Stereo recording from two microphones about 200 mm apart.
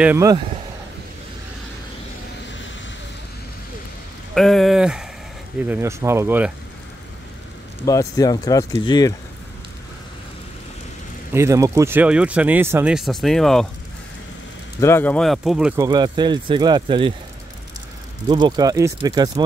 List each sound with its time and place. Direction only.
0.0 s speech: 15° right (ahead or behind)
4.4 s speech: centre (ahead or behind)
5.7 s speech: 15° right (ahead or behind)
7.8 s speech: 15° left (ahead or behind)
11.3 s speech: 15° right (ahead or behind); by 13.7 s centre (ahead or behind)
14.8 s speech: 10° left (ahead or behind); by 15.8 s 5° right (ahead or behind)
15.8 s speech: 20° right (ahead or behind)
18.3 s speech: 20° right (ahead or behind)